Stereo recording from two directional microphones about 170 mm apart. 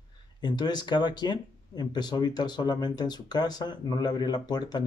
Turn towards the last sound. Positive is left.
turn(degrees=25)  # may be behind; listen again after turning